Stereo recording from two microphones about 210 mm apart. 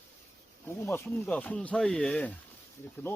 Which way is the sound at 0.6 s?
10° left (ahead or behind).